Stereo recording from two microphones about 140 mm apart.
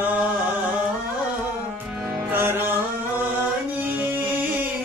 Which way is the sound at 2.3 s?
15° right (ahead or behind).